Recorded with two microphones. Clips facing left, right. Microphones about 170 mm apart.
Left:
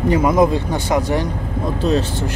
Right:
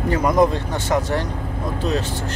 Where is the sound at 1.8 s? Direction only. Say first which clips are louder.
Left 5 dB; 30° left (ahead or behind).